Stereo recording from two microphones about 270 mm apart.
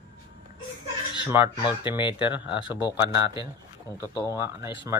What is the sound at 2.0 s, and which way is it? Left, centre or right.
Speech, centre.